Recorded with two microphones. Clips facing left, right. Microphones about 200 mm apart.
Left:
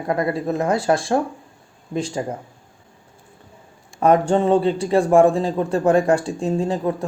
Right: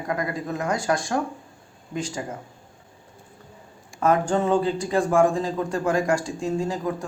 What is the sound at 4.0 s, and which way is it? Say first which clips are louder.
Speech: left 5 dB; 30° left (ahead or behind).